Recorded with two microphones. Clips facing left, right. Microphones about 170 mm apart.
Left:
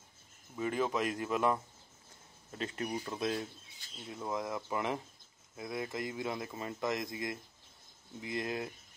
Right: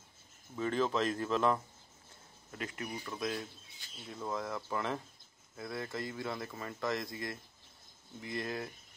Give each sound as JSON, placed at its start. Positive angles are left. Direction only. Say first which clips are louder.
{"t": 0.6, "sound": "speech", "louder": "right 1 dB", "side_deg": 10}
{"t": 2.5, "sound": "speech", "louder": "left 4 dB", "side_deg": 30}